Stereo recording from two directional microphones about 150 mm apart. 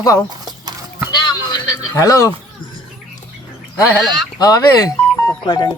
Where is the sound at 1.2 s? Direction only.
30° left (ahead or behind).